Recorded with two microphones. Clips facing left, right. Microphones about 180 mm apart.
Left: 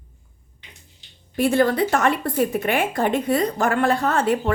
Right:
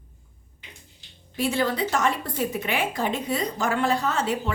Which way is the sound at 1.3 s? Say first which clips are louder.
Left 6 dB; 55° left (ahead or behind).